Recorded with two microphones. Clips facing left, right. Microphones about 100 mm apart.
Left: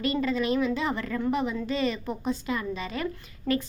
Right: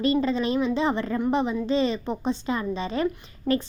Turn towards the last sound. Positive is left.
turn(degrees=-30)  # may be behind; listen again after turning